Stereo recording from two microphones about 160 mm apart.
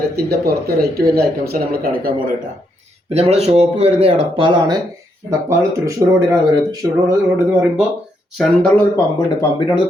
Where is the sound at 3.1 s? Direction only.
40° right (ahead or behind); by 5.9 s 20° right (ahead or behind).